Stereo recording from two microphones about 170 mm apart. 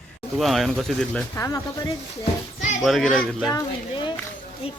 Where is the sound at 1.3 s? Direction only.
15° left (ahead or behind).